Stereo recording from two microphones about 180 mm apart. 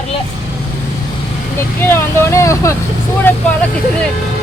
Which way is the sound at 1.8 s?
15° left (ahead or behind).